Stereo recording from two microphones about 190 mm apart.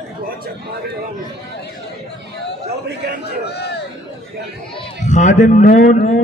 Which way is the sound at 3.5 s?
60° left (ahead or behind).